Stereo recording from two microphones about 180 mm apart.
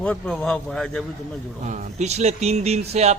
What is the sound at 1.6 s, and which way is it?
Speech, 40° right (ahead or behind).